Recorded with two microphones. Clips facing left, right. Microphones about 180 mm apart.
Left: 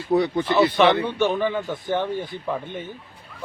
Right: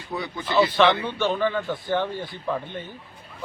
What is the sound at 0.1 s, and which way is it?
Speech, 65° left (ahead or behind).